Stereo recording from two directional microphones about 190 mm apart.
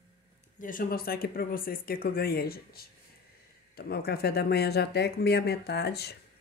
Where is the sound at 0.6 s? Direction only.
45° left (ahead or behind).